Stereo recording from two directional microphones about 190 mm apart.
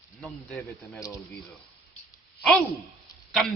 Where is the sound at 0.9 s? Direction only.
15° left (ahead or behind).